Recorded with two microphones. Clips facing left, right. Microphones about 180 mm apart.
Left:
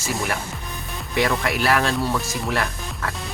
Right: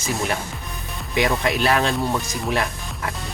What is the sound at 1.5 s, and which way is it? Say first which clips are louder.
Speech: right 1 dB; 20° right (ahead or behind).